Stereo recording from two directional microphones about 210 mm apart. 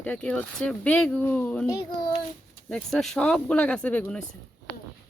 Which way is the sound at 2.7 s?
Centre (ahead or behind).